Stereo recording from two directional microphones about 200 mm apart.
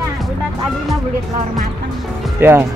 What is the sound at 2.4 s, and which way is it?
Speech, 10° right (ahead or behind).